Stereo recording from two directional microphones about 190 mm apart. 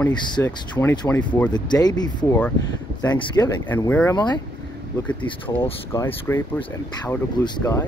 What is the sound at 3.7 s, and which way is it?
Speech, 10° left (ahead or behind).